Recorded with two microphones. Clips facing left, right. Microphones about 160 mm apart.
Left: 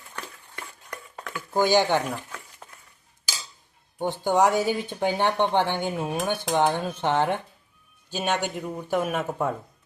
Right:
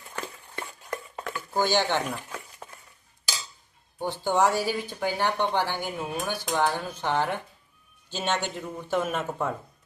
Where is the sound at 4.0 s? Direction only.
20° left (ahead or behind).